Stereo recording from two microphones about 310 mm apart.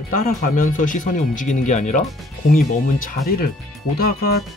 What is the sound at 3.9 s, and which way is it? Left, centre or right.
Speech, left.